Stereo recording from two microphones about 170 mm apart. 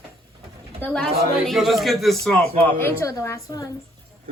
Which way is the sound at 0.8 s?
5° left (ahead or behind).